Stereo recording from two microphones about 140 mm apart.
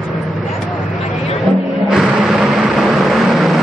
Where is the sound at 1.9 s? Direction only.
Centre (ahead or behind).